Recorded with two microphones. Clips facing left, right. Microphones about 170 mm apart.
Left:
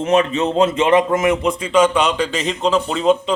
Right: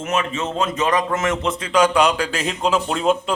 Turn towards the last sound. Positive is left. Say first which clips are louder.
# left 3 dB
turn(degrees=-5)  # may be behind; listen again after turning